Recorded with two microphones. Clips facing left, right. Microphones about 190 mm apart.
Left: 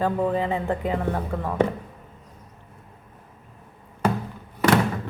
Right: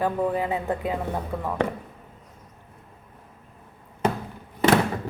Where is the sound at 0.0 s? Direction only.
10° right (ahead or behind).